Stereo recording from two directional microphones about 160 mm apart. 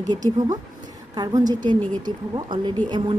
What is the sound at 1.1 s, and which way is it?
Speech, 25° right (ahead or behind).